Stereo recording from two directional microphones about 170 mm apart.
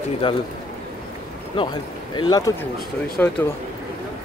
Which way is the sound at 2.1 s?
25° left (ahead or behind).